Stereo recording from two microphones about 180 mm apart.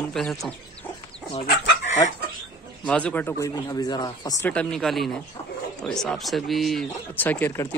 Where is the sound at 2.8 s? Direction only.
5° left (ahead or behind); by 4.3 s 20° left (ahead or behind).